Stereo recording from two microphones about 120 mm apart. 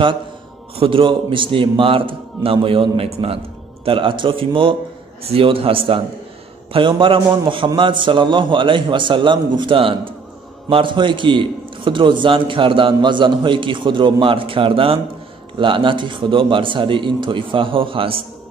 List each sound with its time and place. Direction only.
0.7 s a man's voice: 45° right (ahead or behind)